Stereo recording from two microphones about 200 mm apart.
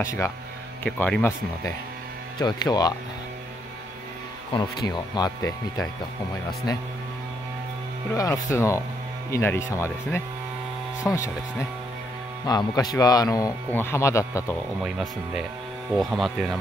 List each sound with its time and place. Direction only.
0.0 s speech: 15° left (ahead or behind)
2.3 s speech: 20° left (ahead or behind)
4.8 s speech: 20° left (ahead or behind)
8.1 s speech: 15° left (ahead or behind)
12.4 s speech: 20° left (ahead or behind)
14.8 s speech: centre (ahead or behind)